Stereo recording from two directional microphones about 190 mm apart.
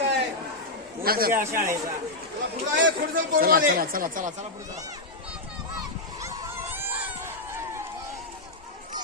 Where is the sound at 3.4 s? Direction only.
50° right (ahead or behind).